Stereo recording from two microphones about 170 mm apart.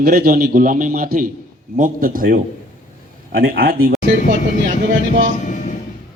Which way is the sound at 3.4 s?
60° right (ahead or behind).